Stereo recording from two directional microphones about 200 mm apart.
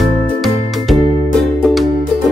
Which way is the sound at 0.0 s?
Centre (ahead or behind).